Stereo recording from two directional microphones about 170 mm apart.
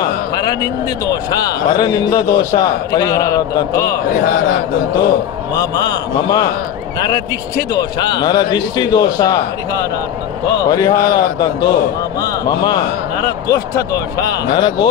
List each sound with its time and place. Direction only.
0.0 s a sound: 25° left (ahead or behind)
1.0 s a man's voice: 20° left (ahead or behind)
3.9 s speech: 60° left (ahead or behind)
5.6 s a man's voice: 25° left (ahead or behind)
10.6 s a man's voice: 25° left (ahead or behind)